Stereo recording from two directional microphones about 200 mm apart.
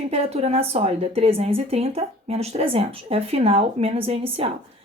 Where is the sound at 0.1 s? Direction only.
30° right (ahead or behind).